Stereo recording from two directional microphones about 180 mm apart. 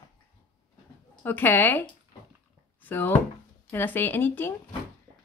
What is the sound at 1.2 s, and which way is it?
Speech, 10° left (ahead or behind).